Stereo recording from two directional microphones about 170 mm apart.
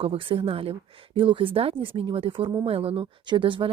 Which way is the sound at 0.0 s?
35° right (ahead or behind).